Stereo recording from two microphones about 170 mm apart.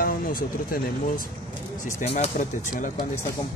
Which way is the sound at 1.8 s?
40° left (ahead or behind).